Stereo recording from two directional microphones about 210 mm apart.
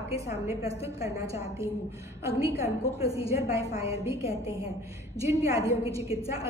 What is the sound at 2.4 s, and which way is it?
Speech, 15° right (ahead or behind).